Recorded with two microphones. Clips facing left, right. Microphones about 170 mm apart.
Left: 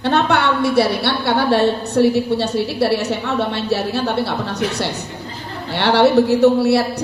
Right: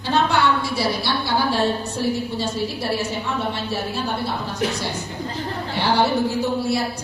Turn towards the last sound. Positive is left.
turn(degrees=70)  # may be behind; listen again after turning